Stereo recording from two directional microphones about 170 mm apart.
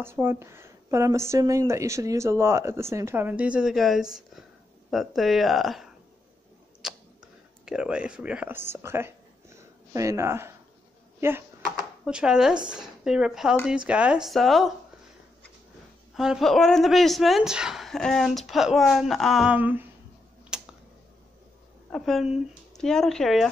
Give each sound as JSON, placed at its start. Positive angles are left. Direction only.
{"t": 0.0, "sound": "speech", "side_deg": -15}
{"t": 6.8, "sound": "a sound", "side_deg": -5}
{"t": 11.1, "sound": "speech", "side_deg": -15}
{"t": 16.2, "sound": "speech", "side_deg": 0}
{"t": 20.5, "sound": "a sound", "side_deg": -5}
{"t": 21.9, "sound": "speech", "side_deg": 0}